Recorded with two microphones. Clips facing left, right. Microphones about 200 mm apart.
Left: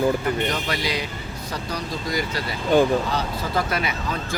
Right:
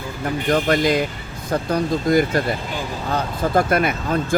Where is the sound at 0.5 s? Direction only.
50° right (ahead or behind).